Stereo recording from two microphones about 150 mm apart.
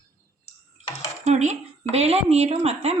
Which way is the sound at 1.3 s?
50° right (ahead or behind).